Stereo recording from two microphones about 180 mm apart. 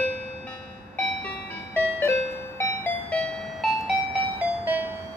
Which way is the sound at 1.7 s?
15° left (ahead or behind).